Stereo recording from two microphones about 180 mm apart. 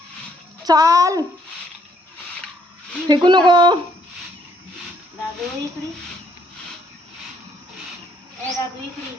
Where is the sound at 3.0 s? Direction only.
25° right (ahead or behind).